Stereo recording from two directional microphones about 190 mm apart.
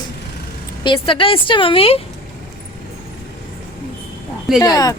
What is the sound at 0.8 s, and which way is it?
A woman's voice, 30° left (ahead or behind).